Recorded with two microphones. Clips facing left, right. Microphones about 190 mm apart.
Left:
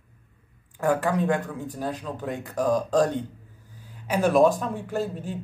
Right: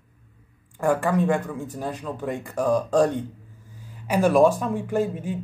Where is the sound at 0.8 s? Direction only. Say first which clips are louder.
Right 2 dB; 5° left (ahead or behind).